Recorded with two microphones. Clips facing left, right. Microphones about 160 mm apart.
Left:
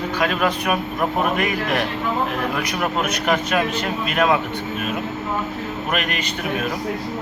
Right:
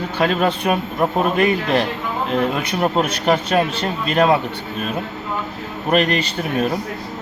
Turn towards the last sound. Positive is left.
turn(degrees=-30)  # may be behind; listen again after turning